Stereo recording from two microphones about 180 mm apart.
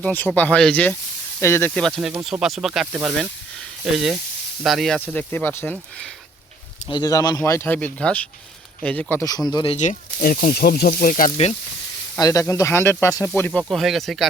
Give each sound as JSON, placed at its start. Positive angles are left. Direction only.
{"t": 0.0, "sound": "speech", "side_deg": 10}
{"t": 6.8, "sound": "speech", "side_deg": 25}
{"t": 9.7, "sound": "speech", "side_deg": 50}
{"t": 12.1, "sound": "speech", "side_deg": 20}